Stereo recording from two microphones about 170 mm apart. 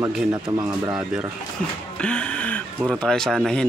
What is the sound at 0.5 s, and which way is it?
Speech, 20° right (ahead or behind).